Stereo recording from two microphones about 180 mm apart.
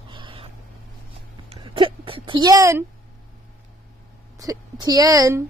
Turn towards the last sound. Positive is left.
turn(degrees=-20)  # may be behind; listen again after turning